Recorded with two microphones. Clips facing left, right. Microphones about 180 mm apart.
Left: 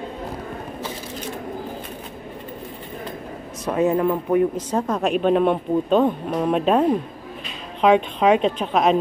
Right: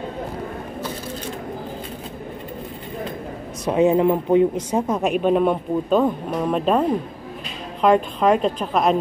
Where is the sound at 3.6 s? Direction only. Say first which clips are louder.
Right 3 dB; 15° right (ahead or behind); by 9.0 s centre (ahead or behind).